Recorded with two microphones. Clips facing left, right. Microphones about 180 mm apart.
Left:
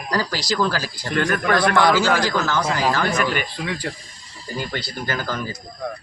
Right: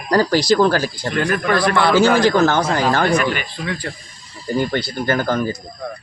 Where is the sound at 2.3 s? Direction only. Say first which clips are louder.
Right 7 dB; 55° right (ahead or behind).